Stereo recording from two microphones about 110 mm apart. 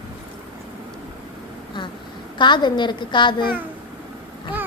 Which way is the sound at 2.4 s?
45° left (ahead or behind).